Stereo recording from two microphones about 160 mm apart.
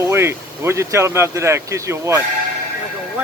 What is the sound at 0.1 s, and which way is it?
Speech, 15° right (ahead or behind).